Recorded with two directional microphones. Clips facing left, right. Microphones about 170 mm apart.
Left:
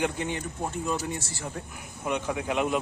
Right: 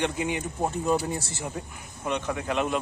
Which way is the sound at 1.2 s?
30° right (ahead or behind).